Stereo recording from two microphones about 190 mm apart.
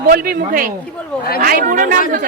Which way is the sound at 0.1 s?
50° right (ahead or behind).